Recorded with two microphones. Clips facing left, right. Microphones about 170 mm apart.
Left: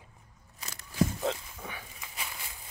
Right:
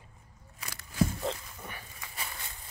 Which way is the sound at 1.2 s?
5° left (ahead or behind).